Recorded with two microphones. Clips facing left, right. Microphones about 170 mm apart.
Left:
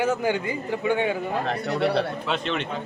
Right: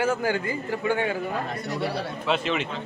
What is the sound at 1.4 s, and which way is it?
Speech, 65° left (ahead or behind).